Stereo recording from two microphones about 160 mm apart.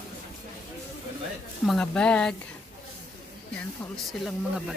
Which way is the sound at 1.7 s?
5° left (ahead or behind).